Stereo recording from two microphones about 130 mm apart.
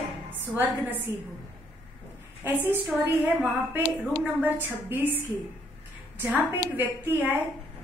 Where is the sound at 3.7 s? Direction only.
15° right (ahead or behind).